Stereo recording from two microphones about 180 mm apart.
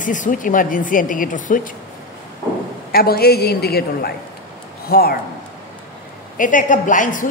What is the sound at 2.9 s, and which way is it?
A woman's voice, 55° left (ahead or behind).